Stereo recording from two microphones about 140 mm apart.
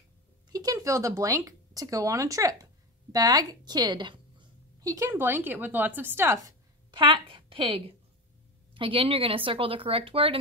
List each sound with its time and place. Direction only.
0.5 s speech: 25° right (ahead or behind)
6.9 s a woman's voice: 35° right (ahead or behind)